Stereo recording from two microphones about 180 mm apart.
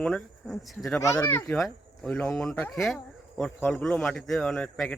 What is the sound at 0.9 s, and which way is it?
Speech, 15° left (ahead or behind).